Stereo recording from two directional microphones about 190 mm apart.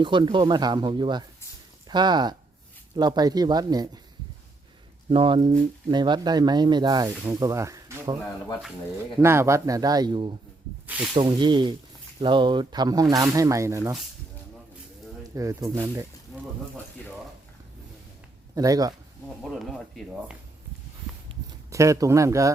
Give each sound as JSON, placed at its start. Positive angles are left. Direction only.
{"t": 0.0, "sound": "speech", "side_deg": -25}
{"t": 5.1, "sound": "speech", "side_deg": -30}
{"t": 9.2, "sound": "speech", "side_deg": -15}
{"t": 15.4, "sound": "speech", "side_deg": -15}
{"t": 18.5, "sound": "speech", "side_deg": -20}
{"t": 19.4, "sound": "speech", "side_deg": 0}
{"t": 21.7, "sound": "speech", "side_deg": -15}